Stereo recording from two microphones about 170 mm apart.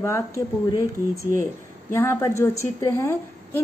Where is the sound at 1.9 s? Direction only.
15° left (ahead or behind).